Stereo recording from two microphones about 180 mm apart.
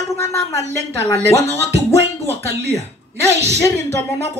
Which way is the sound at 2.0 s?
70° right (ahead or behind).